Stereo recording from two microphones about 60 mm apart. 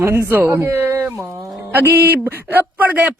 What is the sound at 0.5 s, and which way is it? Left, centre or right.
A man's voice, right.